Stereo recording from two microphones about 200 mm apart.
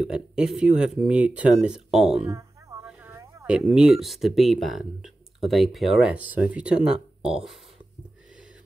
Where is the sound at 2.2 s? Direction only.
15° right (ahead or behind).